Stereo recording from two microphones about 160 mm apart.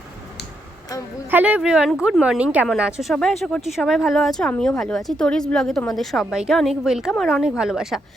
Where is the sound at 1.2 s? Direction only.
10° right (ahead or behind).